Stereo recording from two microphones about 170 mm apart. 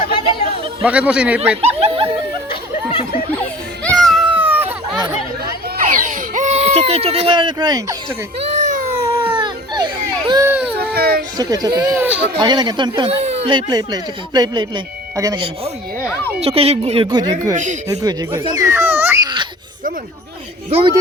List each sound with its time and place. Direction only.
0.8 s a man's voice: 5° right (ahead or behind)
1.6 s a sound: 35° right (ahead or behind)
2.5 s chatter: 35° left (ahead or behind)
3.3 s music: 10° left (ahead or behind); by 4.9 s 10° right (ahead or behind)
5.7 s baby cry: 50° right (ahead or behind); by 7.9 s 25° right (ahead or behind)
8.5 s a sound: 45° right (ahead or behind)
9.2 s baby cry: 30° right (ahead or behind)
10.4 s a man's voice: 10° right (ahead or behind)
10.8 s baby cry: 65° right (ahead or behind)
11.3 s speech: 25° right (ahead or behind)
16.4 s speech: 35° right (ahead or behind); by 19.3 s 15° right (ahead or behind)
20.7 s speech: 35° right (ahead or behind)